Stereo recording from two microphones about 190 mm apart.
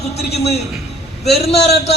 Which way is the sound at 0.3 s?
35° left (ahead or behind).